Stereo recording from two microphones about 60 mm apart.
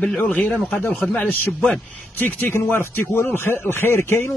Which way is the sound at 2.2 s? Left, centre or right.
Left.